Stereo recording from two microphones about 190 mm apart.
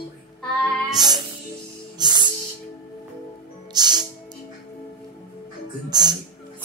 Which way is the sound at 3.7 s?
20° right (ahead or behind).